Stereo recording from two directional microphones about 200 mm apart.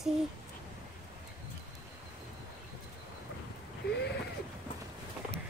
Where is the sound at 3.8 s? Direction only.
55° left (ahead or behind).